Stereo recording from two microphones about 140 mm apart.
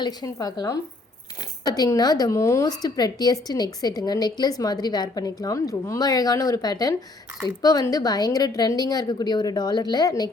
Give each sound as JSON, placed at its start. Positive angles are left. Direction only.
{"t": 0.0, "sound": "a woman's voice", "side_deg": 25}